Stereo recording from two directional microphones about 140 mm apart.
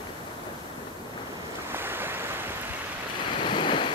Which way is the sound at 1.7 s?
15° right (ahead or behind).